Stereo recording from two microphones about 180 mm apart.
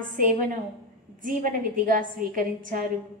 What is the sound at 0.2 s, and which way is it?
A woman's voice, 50° right (ahead or behind).